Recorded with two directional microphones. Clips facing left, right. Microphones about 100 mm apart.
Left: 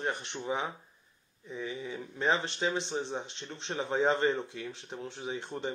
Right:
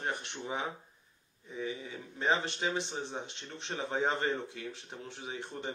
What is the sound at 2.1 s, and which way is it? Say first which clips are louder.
Speech: left 1 dB; 30° left (ahead or behind).